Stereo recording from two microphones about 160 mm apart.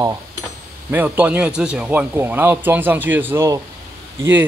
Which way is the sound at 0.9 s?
10° right (ahead or behind).